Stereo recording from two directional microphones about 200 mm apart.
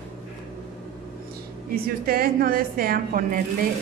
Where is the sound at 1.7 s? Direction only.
50° right (ahead or behind).